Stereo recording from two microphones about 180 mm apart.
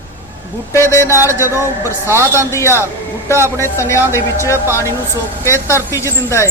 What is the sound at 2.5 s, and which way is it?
Speech, 15° left (ahead or behind).